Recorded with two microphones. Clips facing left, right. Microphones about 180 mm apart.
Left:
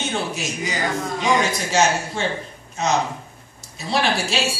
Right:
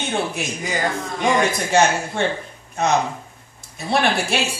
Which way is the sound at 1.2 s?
55° right (ahead or behind).